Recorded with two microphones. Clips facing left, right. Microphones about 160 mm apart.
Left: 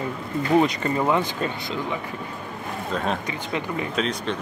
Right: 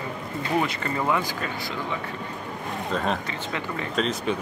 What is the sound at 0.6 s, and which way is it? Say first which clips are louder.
Speech: left 4 dB; 15° left (ahead or behind).